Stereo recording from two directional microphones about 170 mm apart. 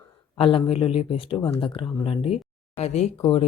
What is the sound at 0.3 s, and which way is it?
A woman's voice, 35° left (ahead or behind).